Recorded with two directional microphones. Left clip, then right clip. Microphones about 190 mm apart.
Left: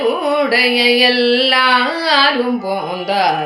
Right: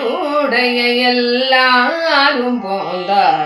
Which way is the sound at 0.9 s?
50° left (ahead or behind).